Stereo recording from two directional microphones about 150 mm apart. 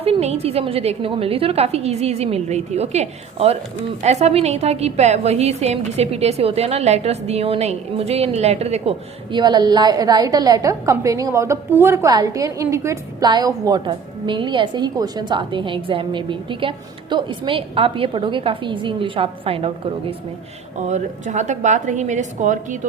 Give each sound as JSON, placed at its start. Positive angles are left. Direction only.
{"t": 0.0, "sound": "a woman's voice", "side_deg": -45}
{"t": 9.3, "sound": "a woman's voice", "side_deg": -30}
{"t": 20.8, "sound": "a woman's voice", "side_deg": -50}